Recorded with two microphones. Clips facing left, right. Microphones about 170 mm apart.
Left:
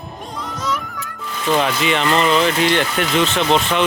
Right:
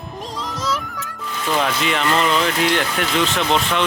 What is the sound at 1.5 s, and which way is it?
Speech, centre (ahead or behind).